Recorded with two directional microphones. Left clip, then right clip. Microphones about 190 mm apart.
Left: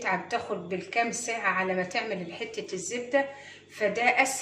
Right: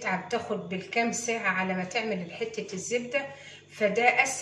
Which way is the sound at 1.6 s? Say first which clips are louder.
Left 2 dB; 35° left (ahead or behind).